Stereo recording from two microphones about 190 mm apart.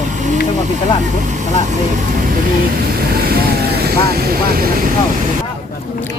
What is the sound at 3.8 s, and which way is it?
Speech, 55° right (ahead or behind).